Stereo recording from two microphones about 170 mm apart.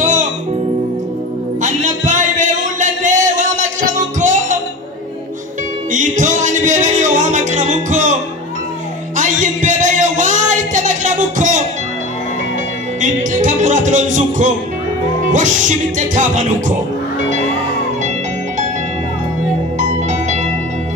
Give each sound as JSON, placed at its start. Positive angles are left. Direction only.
{"t": 0.0, "sound": "music", "side_deg": -45}
{"t": 1.6, "sound": "music", "side_deg": -45}
{"t": 5.9, "sound": "music", "side_deg": -45}
{"t": 9.1, "sound": "a sound", "side_deg": -45}
{"t": 13.0, "sound": "music", "side_deg": -45}
{"t": 19.8, "sound": "music", "side_deg": -45}